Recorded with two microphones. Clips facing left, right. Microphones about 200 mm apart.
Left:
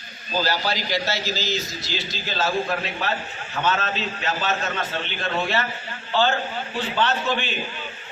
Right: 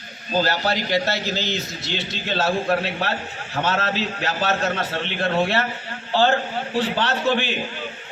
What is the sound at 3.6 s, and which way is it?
A man's voice, 75° right (ahead or behind).